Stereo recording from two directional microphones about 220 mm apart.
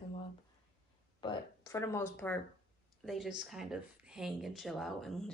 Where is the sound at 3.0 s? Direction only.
Centre (ahead or behind).